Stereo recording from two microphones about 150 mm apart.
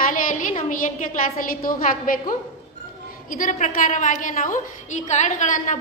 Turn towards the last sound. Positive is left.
turn(degrees=55)  # may be behind; listen again after turning